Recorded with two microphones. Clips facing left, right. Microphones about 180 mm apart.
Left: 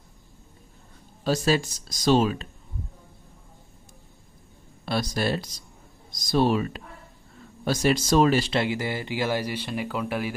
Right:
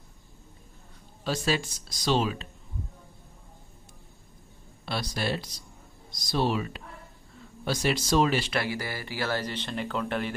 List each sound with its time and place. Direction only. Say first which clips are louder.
1.2 s speech: left 5 dB; 40° left (ahead or behind)
4.8 s speech: left 5 dB; 45° left (ahead or behind)
8.5 s speech: left 5 dB; 20° left (ahead or behind)